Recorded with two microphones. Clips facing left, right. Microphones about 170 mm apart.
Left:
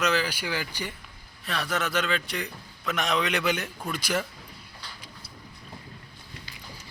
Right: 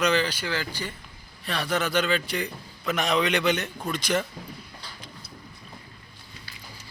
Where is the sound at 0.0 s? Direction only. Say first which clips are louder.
Right 2 dB; 5° left (ahead or behind).